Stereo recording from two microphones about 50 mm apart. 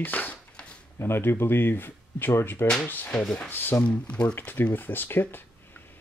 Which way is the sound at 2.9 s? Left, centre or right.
Left.